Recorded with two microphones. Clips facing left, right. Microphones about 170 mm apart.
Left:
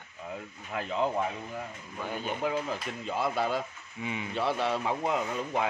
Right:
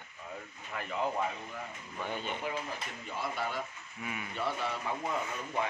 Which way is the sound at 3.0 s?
90° left.